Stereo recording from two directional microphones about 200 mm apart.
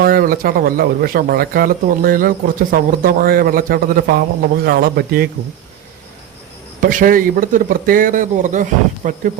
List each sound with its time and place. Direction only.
0.0 s speech: 50° right (ahead or behind)
6.8 s speech: 45° right (ahead or behind)